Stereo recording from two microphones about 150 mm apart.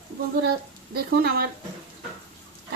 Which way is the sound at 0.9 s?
90° right.